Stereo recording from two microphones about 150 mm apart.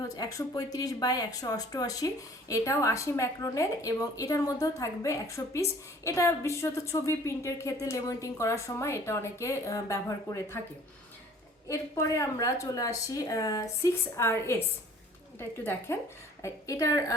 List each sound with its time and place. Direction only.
0.2 s a woman's voice: 25° left (ahead or behind)
11.7 s a woman's voice: 20° left (ahead or behind)